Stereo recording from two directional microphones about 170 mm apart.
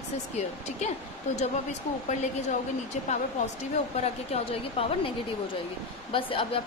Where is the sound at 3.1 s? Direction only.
40° left (ahead or behind).